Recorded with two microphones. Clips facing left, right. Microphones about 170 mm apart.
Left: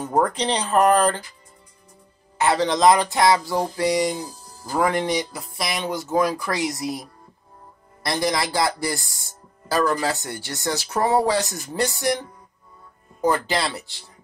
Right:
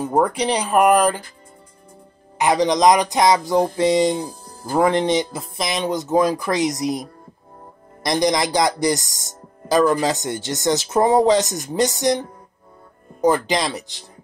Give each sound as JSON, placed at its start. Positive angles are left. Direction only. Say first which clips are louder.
{"t": 0.0, "sound": "speech", "louder": "right 3 dB", "side_deg": -10}
{"t": 2.3, "sound": "speech", "louder": "right 3 dB", "side_deg": -15}
{"t": 4.3, "sound": "music", "louder": "right 5 dB", "side_deg": -55}
{"t": 4.7, "sound": "speech", "louder": "right 4 dB", "side_deg": -25}